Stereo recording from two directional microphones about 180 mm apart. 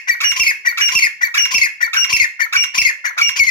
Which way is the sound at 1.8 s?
25° left (ahead or behind).